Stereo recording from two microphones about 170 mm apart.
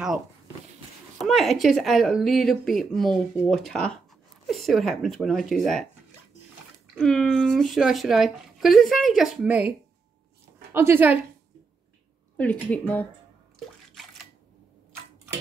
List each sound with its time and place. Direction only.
1.2 s speech: centre (ahead or behind)
7.0 s speech: 5° left (ahead or behind); by 11.1 s 15° right (ahead or behind)
12.4 s a woman's voice: 10° left (ahead or behind)